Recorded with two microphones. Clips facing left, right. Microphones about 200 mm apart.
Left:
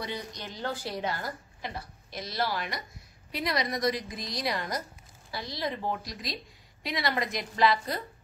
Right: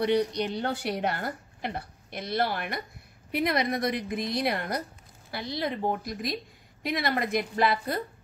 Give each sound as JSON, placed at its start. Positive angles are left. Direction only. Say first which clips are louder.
{"t": 0.0, "sound": "a woman's voice", "louder": "right 12 dB", "side_deg": -65}